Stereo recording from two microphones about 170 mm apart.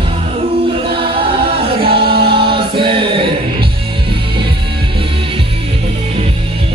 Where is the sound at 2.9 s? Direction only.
30° right (ahead or behind).